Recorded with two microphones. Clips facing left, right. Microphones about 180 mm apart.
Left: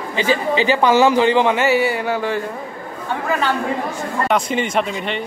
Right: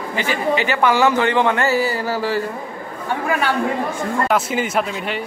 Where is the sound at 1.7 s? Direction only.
65° left (ahead or behind).